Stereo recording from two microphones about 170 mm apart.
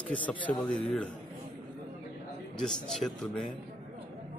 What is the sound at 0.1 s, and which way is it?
Speech, 10° left (ahead or behind).